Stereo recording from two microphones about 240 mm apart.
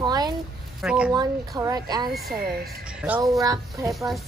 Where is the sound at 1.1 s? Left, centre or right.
Centre.